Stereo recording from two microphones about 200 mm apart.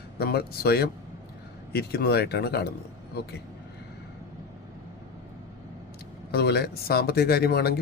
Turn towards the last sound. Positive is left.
turn(degrees=50)  # may be behind; listen again after turning